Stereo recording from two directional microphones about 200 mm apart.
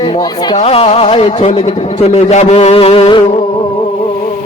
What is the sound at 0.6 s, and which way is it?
A man's voice, 30° left (ahead or behind).